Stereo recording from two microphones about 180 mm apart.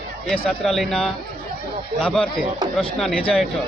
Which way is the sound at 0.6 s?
Centre (ahead or behind).